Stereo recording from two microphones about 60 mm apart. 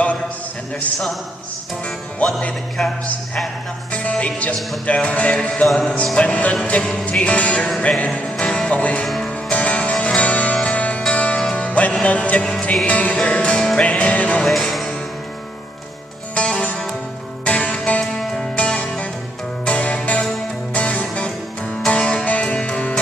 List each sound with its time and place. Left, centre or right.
2.8 s music: centre
3.9 s music: left
9.0 s music: centre
9.3 s music: left
14.4 s music: centre
16.3 s music: centre